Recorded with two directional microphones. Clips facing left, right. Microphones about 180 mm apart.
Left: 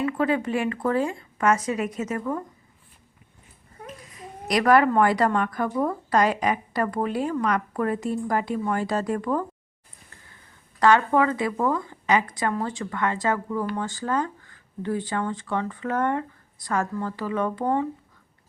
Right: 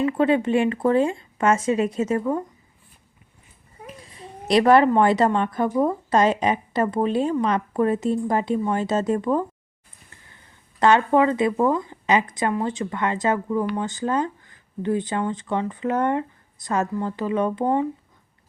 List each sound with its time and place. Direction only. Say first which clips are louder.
0.0 s a woman's voice: right 4 dB; 25° right (ahead or behind)
4.0 s a woman's voice: right 4 dB; 30° right (ahead or behind)
10.8 s a woman's voice: right 2 dB; 20° right (ahead or behind)